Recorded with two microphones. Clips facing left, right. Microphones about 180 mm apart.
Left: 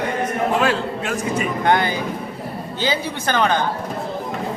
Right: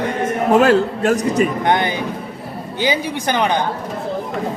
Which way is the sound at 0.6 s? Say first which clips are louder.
Right 7 dB; 40° right (ahead or behind).